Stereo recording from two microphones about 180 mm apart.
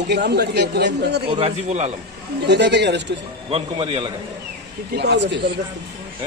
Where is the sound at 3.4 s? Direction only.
30° right (ahead or behind).